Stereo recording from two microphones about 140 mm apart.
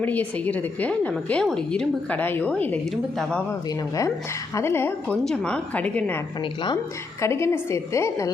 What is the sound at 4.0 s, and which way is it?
A woman's voice, 20° left (ahead or behind).